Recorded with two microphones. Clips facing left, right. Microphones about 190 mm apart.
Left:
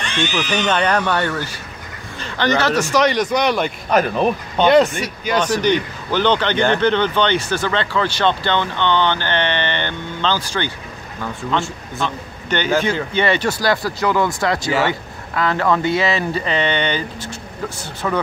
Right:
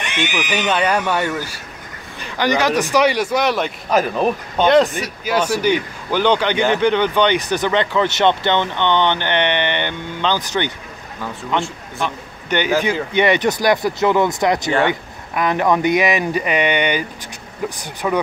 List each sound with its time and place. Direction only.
0.0 s a man's voice: 20° right (ahead or behind)